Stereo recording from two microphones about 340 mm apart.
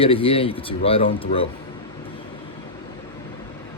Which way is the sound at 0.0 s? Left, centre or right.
Centre.